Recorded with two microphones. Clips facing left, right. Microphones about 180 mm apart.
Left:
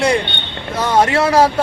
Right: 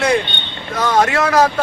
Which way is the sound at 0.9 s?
25° left (ahead or behind).